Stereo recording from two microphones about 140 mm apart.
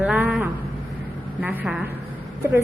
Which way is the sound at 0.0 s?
10° right (ahead or behind).